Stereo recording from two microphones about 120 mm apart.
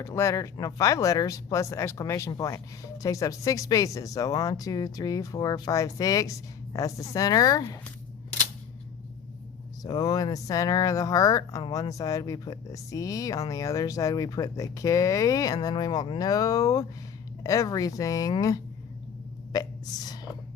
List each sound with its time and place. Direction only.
0.0 s speech: 25° left (ahead or behind)
9.8 s speech: 35° left (ahead or behind)
19.5 s a sound: 35° left (ahead or behind)